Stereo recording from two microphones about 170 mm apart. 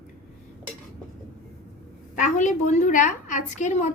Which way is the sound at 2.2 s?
45° left (ahead or behind).